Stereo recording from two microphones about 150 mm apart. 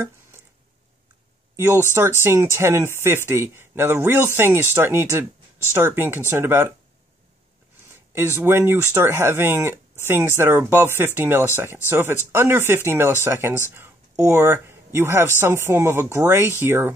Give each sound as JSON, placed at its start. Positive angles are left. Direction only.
{"t": 1.6, "sound": "speech", "side_deg": -15}
{"t": 8.1, "sound": "speech", "side_deg": -15}